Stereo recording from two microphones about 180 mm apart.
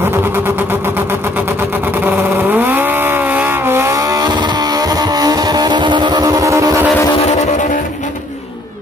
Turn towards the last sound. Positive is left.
turn(degrees=40)  # may be behind; listen again after turning